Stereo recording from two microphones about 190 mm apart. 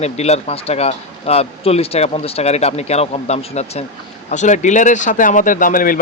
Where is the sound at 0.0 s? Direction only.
35° left (ahead or behind).